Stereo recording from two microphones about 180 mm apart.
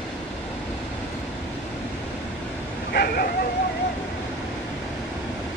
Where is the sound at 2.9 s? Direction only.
60° left (ahead or behind).